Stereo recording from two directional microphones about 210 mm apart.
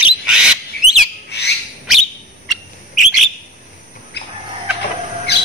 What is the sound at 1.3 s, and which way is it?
Bird, 55° left (ahead or behind).